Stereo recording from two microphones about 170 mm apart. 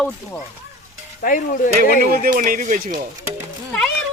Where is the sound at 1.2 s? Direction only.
55° left (ahead or behind).